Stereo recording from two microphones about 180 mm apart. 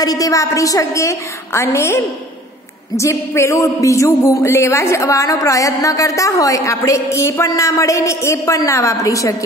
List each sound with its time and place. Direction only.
0.0 s speech: 20° left (ahead or behind)